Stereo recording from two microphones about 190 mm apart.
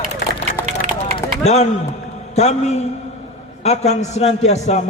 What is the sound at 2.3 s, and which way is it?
A man's voice, 35° left (ahead or behind).